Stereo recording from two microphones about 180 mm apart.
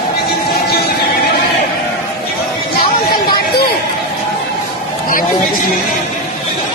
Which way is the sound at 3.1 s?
60° left (ahead or behind).